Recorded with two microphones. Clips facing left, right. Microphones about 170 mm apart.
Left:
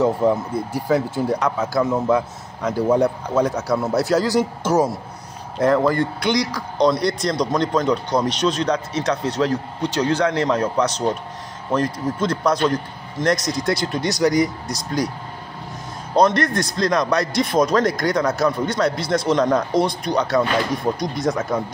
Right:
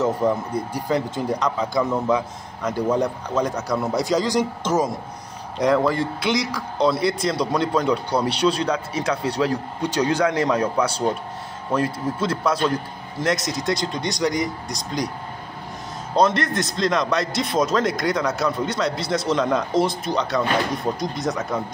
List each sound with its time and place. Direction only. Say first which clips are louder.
0.7 s a man's voice: left 5 dB; 5° left (ahead or behind)
16.2 s speech: left 2 dB; centre (ahead or behind)